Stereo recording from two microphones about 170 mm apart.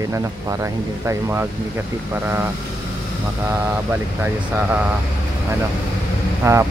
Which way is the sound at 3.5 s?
10° right (ahead or behind).